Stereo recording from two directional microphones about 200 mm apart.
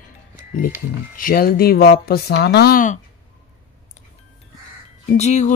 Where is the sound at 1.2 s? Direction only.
45° left (ahead or behind).